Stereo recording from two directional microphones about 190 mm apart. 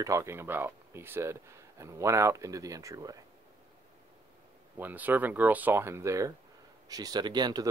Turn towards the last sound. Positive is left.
turn(degrees=-20)  # may be behind; listen again after turning